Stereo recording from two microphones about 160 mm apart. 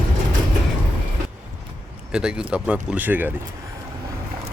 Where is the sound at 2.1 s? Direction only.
5° right (ahead or behind).